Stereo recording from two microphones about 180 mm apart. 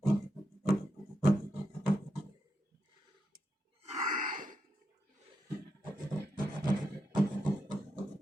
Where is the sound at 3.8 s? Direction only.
45° right (ahead or behind).